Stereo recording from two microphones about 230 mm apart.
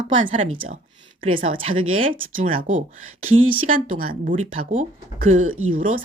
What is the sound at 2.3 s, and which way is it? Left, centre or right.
Speech, right.